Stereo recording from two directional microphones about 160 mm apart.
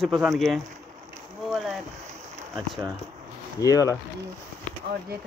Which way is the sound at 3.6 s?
20° left (ahead or behind).